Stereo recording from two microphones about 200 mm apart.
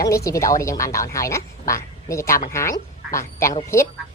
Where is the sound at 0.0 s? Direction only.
15° left (ahead or behind).